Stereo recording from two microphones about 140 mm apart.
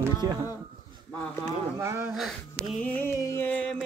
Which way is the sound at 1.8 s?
20° right (ahead or behind).